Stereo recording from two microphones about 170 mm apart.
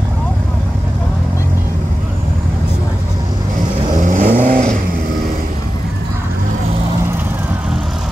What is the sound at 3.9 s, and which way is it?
Vehicle, 45° right (ahead or behind).